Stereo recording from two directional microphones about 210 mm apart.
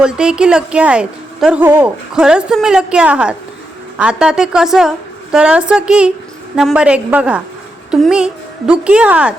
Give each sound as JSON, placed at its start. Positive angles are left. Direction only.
{"t": 0.0, "sound": "a woman's voice", "side_deg": -5}